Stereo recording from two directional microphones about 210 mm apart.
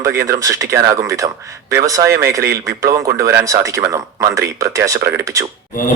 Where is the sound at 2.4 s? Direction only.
45° right (ahead or behind).